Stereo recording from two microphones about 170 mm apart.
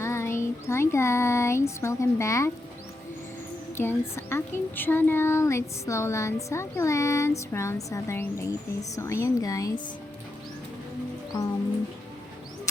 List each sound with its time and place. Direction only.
0.0 s child singing: 15° left (ahead or behind)
3.8 s speech: 15° left (ahead or behind)